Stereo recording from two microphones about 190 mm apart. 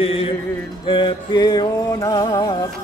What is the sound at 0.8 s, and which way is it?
Music, 25° left (ahead or behind).